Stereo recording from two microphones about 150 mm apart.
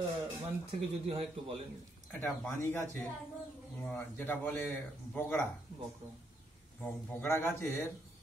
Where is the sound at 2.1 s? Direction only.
15° left (ahead or behind).